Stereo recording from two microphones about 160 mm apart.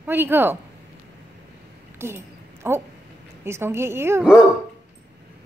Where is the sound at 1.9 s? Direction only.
15° right (ahead or behind).